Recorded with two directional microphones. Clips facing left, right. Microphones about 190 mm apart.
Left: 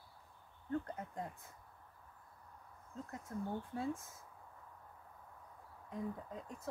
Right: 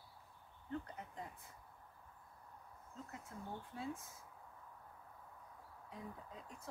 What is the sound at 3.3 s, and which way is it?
Speech, 50° left (ahead or behind).